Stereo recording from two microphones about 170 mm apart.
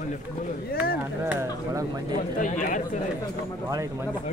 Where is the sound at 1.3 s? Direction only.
15° right (ahead or behind).